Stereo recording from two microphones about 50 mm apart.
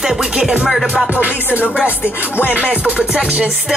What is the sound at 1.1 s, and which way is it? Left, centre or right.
Music, right.